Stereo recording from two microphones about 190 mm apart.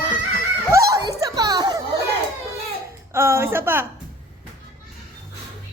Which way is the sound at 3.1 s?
15° right (ahead or behind).